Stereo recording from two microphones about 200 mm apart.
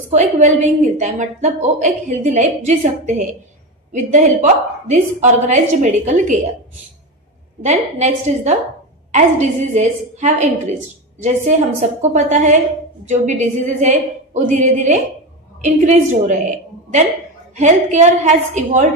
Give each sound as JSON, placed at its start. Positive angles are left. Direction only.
{"t": 0.1, "sound": "a woman's voice", "side_deg": -40}
{"t": 7.6, "sound": "a woman's voice", "side_deg": -35}